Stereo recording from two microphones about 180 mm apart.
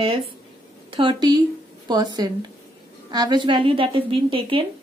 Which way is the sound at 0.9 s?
25° right (ahead or behind).